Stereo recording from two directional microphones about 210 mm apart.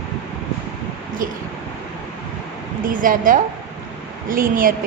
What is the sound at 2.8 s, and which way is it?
Speech, 40° right (ahead or behind).